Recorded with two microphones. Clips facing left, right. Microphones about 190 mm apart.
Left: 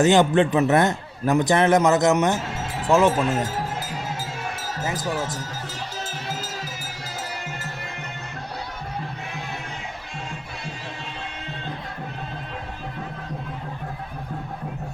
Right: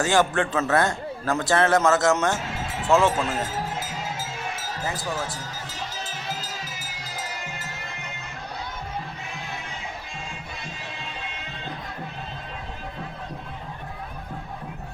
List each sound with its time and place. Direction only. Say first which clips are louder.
0.0 s a man's voice: left 5 dB; 20° left (ahead or behind)
4.9 s speech: left 3 dB; 20° left (ahead or behind)